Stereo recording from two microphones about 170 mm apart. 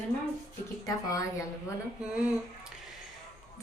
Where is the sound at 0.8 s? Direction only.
20° left (ahead or behind).